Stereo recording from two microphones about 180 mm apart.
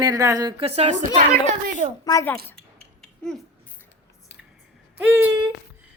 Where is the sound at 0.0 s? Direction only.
20° right (ahead or behind); by 1.2 s 40° right (ahead or behind).